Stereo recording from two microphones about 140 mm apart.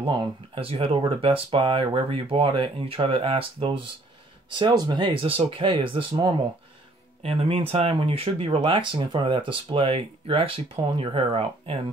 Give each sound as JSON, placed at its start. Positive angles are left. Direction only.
{"t": 0.0, "sound": "speech", "side_deg": -35}